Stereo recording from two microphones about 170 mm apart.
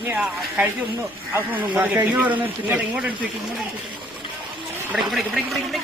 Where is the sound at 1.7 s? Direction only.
10° right (ahead or behind).